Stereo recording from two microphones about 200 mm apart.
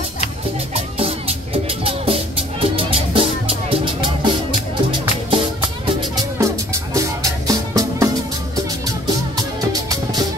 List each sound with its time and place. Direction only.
0.7 s music: 30° right (ahead or behind)
6.3 s music: 15° right (ahead or behind)
9.7 s music: 20° right (ahead or behind)